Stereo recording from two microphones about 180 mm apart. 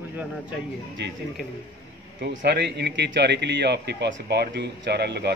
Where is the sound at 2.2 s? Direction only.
65° right (ahead or behind).